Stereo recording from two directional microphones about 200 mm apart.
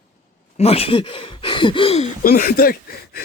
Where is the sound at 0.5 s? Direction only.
30° left (ahead or behind).